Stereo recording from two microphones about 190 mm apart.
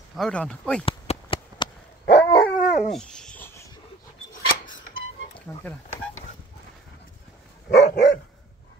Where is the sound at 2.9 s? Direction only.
5° left (ahead or behind).